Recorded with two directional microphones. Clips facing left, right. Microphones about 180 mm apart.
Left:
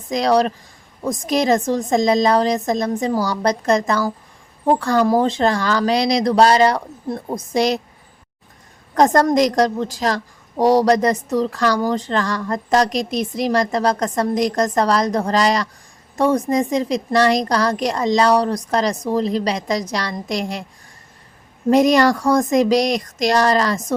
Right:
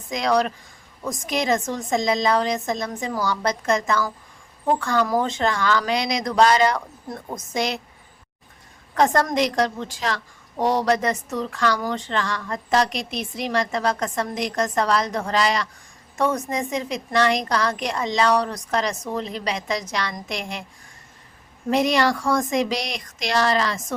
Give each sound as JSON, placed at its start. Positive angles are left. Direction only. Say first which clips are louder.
{"t": 0.1, "sound": "a woman's voice", "louder": "left 5 dB", "side_deg": 35}
{"t": 9.0, "sound": "a woman's voice", "louder": "left 5 dB", "side_deg": 40}
{"t": 21.7, "sound": "a woman's voice", "louder": "left 6 dB", "side_deg": 40}